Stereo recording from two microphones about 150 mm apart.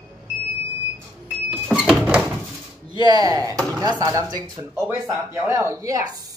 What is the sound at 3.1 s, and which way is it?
Speech, 25° right (ahead or behind).